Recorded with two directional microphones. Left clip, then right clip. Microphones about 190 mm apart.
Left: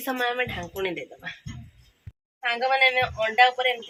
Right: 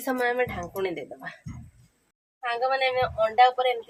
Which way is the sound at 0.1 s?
30° right (ahead or behind).